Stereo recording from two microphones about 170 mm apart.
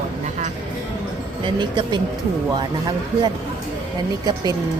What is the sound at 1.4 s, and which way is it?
Speech, 30° right (ahead or behind).